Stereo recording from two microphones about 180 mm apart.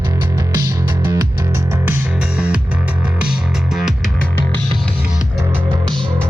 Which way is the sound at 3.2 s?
5° right (ahead or behind).